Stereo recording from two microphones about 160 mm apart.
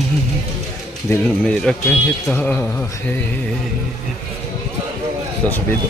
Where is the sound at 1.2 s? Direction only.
5° left (ahead or behind).